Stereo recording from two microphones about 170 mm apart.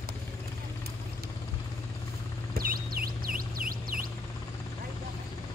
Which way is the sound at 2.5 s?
60° right (ahead or behind).